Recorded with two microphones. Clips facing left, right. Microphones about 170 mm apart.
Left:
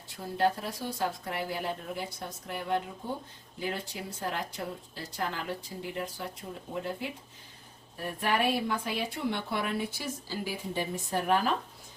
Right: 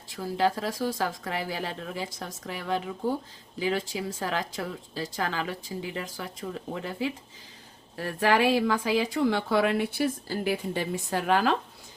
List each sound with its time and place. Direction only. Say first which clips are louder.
0.1 s speech: right 2 dB; 90° right